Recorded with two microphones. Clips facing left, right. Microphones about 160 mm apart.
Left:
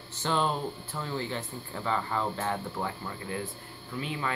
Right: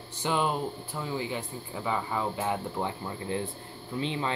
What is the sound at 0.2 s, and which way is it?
Speech, 10° right (ahead or behind).